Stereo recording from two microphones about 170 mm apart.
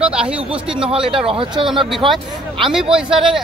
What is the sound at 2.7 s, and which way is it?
Speech, 5° right (ahead or behind).